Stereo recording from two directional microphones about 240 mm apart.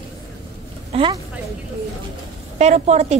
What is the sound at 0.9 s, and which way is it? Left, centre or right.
Speech, centre.